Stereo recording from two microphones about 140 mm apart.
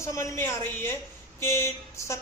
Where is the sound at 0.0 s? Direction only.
20° left (ahead or behind).